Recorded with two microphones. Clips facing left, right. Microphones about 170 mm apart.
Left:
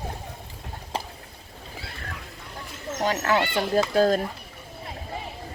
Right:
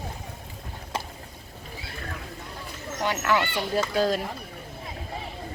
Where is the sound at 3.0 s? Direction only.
40° left (ahead or behind).